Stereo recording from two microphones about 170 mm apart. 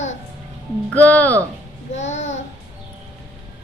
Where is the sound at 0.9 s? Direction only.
10° left (ahead or behind).